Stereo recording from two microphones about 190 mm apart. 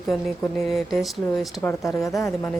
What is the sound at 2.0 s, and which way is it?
Speech, 15° left (ahead or behind).